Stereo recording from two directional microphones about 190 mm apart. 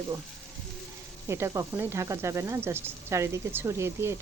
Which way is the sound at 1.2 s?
15° right (ahead or behind).